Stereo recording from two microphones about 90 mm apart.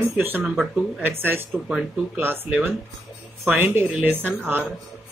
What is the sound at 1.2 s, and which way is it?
Speech, 25° right (ahead or behind).